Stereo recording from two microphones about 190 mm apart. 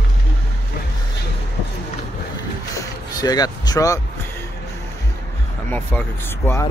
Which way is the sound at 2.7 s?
20° left (ahead or behind).